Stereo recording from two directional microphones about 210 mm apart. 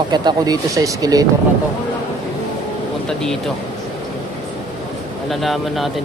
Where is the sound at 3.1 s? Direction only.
Centre (ahead or behind).